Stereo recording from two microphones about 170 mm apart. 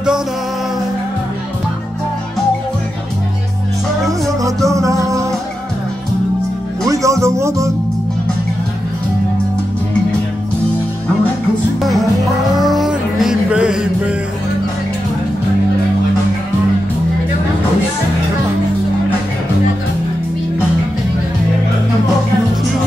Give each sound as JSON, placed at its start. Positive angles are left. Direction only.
{"t": 4.4, "sound": "music", "side_deg": -20}
{"t": 6.9, "sound": "music", "side_deg": -20}
{"t": 12.5, "sound": "music", "side_deg": 0}